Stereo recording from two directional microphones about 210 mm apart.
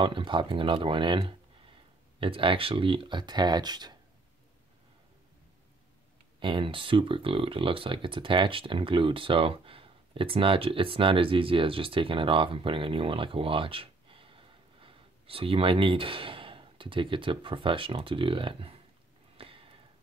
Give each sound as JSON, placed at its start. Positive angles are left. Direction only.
{"t": 0.0, "sound": "speech", "side_deg": -25}
{"t": 6.4, "sound": "speech", "side_deg": -25}
{"t": 19.3, "sound": "sniff", "side_deg": -25}